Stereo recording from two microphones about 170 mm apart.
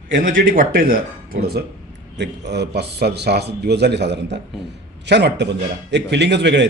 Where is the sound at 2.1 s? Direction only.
85° right.